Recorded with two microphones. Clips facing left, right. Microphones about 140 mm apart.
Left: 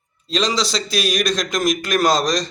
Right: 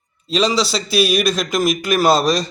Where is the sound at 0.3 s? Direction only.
5° right (ahead or behind).